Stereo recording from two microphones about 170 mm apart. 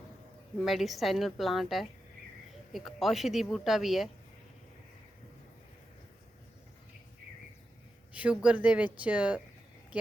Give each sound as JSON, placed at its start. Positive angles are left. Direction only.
{"t": 0.6, "sound": "a woman's voice", "side_deg": 0}
{"t": 8.1, "sound": "a sound", "side_deg": -10}
{"t": 8.4, "sound": "speech", "side_deg": -5}